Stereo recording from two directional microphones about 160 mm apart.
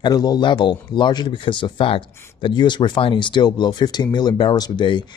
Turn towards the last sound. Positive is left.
turn(degrees=30)  # may be behind; listen again after turning